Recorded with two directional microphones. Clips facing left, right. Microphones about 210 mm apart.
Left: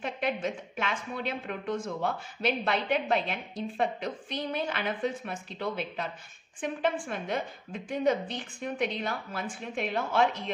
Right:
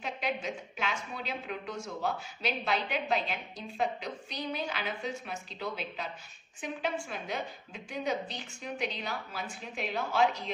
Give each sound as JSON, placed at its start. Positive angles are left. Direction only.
{"t": 0.0, "sound": "a woman's voice", "side_deg": 55}